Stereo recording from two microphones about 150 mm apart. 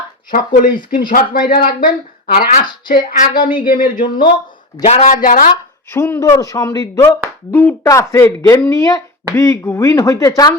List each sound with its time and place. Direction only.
0.3 s a woman's voice: 65° left (ahead or behind)
2.8 s a woman's voice: 65° left (ahead or behind)
4.9 s speech: 50° left (ahead or behind)
5.2 s a woman's voice: 70° left (ahead or behind)
5.9 s speech: 15° left (ahead or behind)